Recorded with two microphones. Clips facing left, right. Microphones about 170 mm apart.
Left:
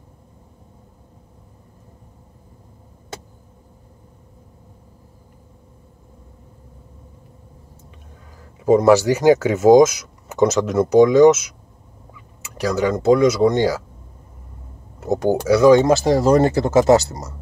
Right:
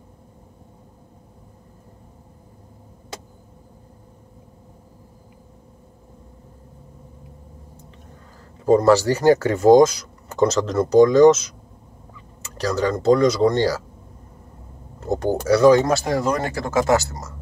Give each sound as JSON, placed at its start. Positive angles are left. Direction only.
{"t": 8.6, "sound": "speech", "side_deg": 15}
{"t": 12.5, "sound": "speech", "side_deg": 15}
{"t": 15.0, "sound": "speech", "side_deg": 10}
{"t": 15.7, "sound": "speech", "side_deg": 25}